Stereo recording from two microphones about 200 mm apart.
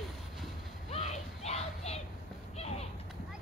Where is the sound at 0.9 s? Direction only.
30° left (ahead or behind).